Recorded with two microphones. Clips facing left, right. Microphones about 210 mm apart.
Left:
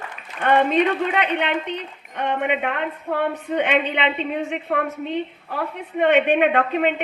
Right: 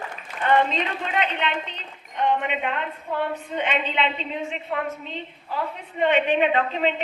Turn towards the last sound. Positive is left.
turn(degrees=55)  # may be behind; listen again after turning